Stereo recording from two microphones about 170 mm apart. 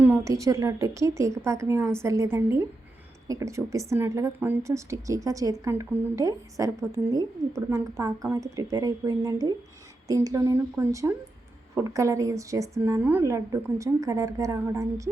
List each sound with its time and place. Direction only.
0.0 s a woman's voice: 15° right (ahead or behind)